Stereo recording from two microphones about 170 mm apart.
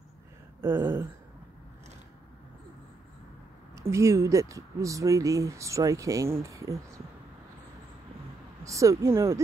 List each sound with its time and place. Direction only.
0.6 s a sound: 15° right (ahead or behind)
3.9 s speech: 15° right (ahead or behind)
8.6 s speech: 20° right (ahead or behind)